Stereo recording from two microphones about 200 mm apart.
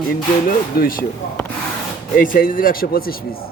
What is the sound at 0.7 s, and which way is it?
Speech, 45° left (ahead or behind).